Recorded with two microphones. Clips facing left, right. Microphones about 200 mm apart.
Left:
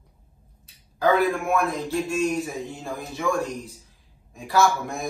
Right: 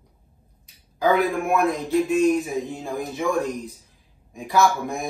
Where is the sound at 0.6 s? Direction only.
15° right (ahead or behind).